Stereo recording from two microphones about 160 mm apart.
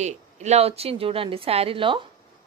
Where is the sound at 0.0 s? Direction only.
45° right (ahead or behind).